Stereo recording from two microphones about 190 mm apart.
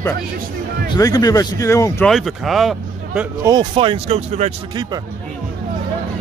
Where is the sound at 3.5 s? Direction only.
25° right (ahead or behind).